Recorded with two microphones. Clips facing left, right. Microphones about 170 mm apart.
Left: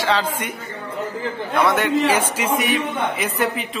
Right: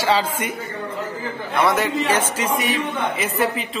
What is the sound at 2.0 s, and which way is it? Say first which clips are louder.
A man's voice: left 1 dB; 10° left (ahead or behind).